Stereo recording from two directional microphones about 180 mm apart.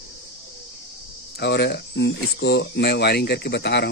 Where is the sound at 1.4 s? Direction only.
70° left (ahead or behind).